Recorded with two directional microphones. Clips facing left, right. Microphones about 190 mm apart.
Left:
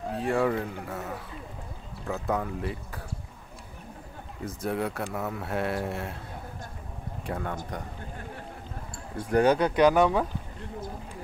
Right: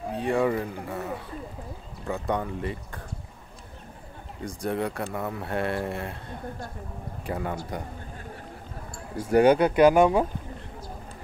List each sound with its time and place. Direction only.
0.1 s speech: centre (ahead or behind)
4.4 s speech: 5° left (ahead or behind)
7.2 s speech: 5° right (ahead or behind)
9.2 s speech: 10° right (ahead or behind)